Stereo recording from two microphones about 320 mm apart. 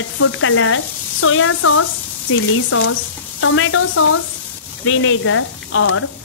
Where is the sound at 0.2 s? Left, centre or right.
Left.